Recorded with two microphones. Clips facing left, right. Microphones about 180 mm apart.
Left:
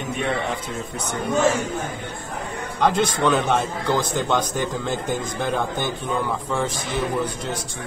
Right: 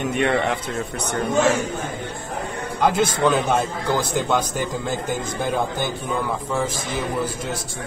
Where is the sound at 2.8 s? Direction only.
5° right (ahead or behind).